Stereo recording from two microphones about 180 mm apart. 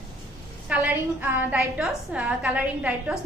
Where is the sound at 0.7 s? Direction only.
10° right (ahead or behind).